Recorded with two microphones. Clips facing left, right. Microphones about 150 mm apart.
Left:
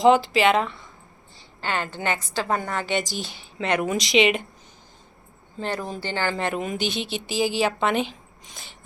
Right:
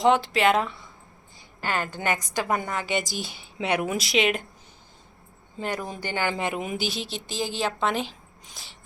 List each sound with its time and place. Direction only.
0.0 s a woman's voice: centre (ahead or behind)
1.6 s a woman's voice: 25° left (ahead or behind)
2.1 s a woman's voice: 15° right (ahead or behind); by 4.4 s centre (ahead or behind)
5.5 s a woman's voice: 10° right (ahead or behind)